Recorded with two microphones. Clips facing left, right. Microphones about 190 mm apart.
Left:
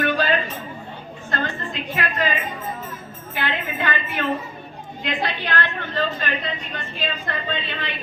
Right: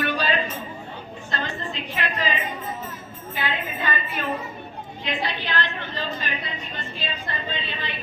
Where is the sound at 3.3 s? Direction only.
65° left (ahead or behind).